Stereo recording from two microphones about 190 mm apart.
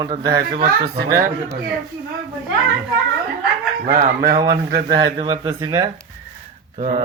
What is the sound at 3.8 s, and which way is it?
Chicken, 45° right (ahead or behind).